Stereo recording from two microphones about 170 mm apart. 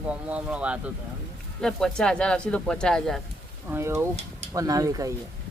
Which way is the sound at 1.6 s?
5° left (ahead or behind).